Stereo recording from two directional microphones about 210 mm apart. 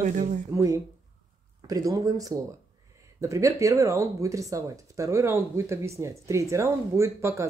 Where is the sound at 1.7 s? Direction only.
15° right (ahead or behind).